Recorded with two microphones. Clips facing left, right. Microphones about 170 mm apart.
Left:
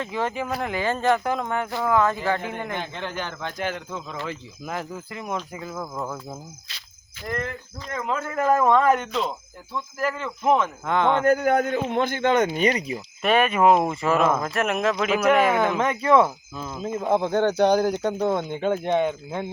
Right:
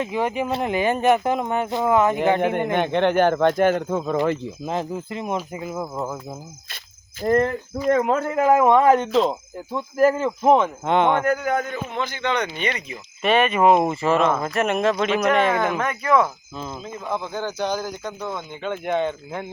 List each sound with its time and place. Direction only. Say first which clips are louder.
0.0 s speech: right 4 dB; 15° right (ahead or behind)
2.7 s speech: right 12 dB; 65° right (ahead or behind)
4.6 s speech: right 3 dB; 25° right (ahead or behind)
7.2 s speech: right 11 dB; 40° right (ahead or behind)
7.9 s speech: right 9 dB; 55° right (ahead or behind)
8.3 s a man's voice: right 2 dB; 15° right (ahead or behind)
9.7 s speech: right 9 dB; 40° right (ahead or behind); by 11.3 s 15° right (ahead or behind)
11.4 s speech: left 3 dB; 55° left (ahead or behind)
13.2 s speech: right 1 dB; 5° left (ahead or behind)
15.8 s speech: left 3 dB; 25° left (ahead or behind)
17.1 s speech: left 6 dB; 60° left (ahead or behind)
18.9 s speech: left 1 dB; 15° left (ahead or behind)